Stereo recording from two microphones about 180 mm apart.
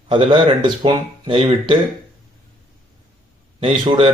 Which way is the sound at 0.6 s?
25° right (ahead or behind).